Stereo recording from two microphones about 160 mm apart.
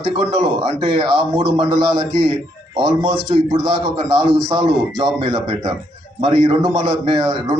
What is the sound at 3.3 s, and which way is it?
A man's voice, 30° right (ahead or behind).